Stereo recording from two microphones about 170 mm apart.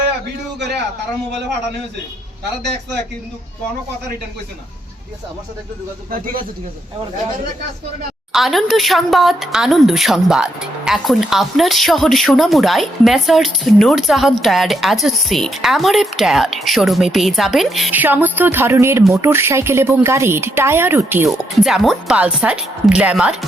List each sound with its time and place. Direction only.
6.1 s a man's voice: 55° right (ahead or behind)
8.3 s speech: centre (ahead or behind)
18.0 s a woman's voice: 10° right (ahead or behind)
21.2 s speech: centre (ahead or behind)